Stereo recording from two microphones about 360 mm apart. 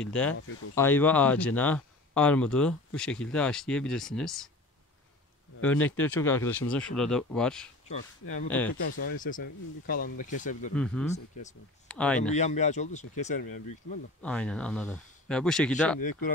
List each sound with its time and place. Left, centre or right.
0.0 s speech: centre
5.6 s speech: centre
7.9 s speech: left
8.5 s speech: centre
8.7 s speech: left
10.7 s speech: centre
12.2 s speech: centre
14.2 s speech: centre
16.0 s speech: left